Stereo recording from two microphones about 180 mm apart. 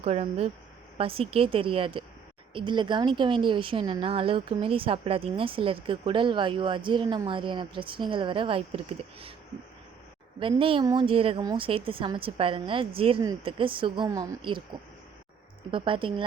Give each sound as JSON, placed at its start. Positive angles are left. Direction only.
{"t": 0.0, "sound": "a woman's voice", "side_deg": -35}
{"t": 10.6, "sound": "a woman's voice", "side_deg": -30}